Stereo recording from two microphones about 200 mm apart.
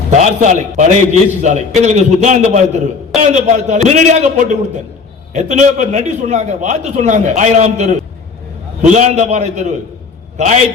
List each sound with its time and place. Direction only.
0.1 s a man's voice: 35° right (ahead or behind)